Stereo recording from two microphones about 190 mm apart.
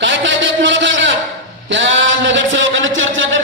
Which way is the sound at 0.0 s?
75° right (ahead or behind).